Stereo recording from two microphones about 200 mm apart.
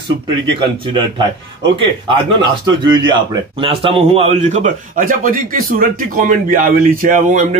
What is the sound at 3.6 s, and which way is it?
A man's voice, 30° right (ahead or behind).